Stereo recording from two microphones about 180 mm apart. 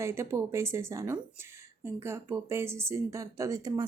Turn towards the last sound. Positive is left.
turn(degrees=-20)  # may be behind; listen again after turning